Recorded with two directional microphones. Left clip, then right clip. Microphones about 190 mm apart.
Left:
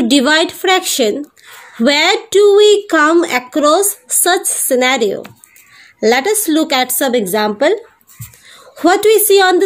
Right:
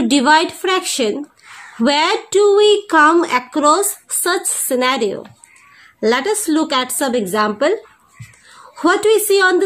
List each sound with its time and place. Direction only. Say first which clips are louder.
0.0 s speech: left 1 dB; 20° left (ahead or behind)
8.7 s speech: left 3 dB; 25° left (ahead or behind)